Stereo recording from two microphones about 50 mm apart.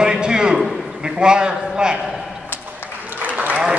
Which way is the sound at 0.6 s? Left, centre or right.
Centre.